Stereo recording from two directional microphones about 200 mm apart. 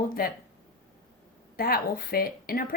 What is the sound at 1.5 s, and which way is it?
Speech, 50° left (ahead or behind).